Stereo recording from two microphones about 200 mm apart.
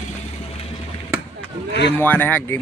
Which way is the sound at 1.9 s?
10° left (ahead or behind).